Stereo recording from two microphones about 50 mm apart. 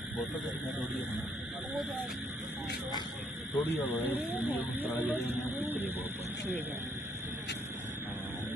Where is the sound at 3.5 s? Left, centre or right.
Left.